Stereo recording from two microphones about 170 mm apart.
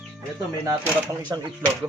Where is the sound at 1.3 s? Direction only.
20° right (ahead or behind).